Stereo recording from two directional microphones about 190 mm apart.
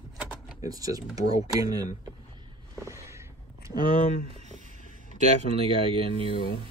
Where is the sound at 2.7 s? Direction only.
15° right (ahead or behind).